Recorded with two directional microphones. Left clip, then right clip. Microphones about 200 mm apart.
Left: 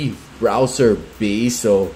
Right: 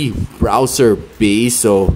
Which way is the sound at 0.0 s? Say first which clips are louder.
Right 1 dB; 30° right (ahead or behind).